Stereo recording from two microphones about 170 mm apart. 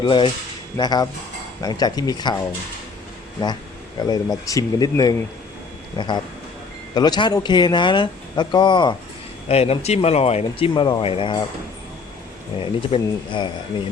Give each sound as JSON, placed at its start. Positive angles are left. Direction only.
{"t": 0.0, "sound": "speech", "side_deg": 30}
{"t": 4.0, "sound": "speech", "side_deg": 20}
{"t": 9.5, "sound": "speech", "side_deg": 35}
{"t": 12.5, "sound": "speech", "side_deg": 30}